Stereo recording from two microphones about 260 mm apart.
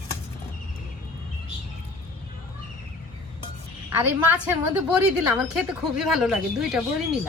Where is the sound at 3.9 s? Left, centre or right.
Centre.